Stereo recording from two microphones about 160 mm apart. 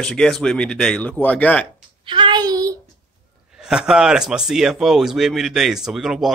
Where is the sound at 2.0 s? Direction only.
30° right (ahead or behind).